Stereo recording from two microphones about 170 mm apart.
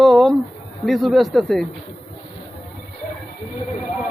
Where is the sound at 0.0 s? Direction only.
Centre (ahead or behind).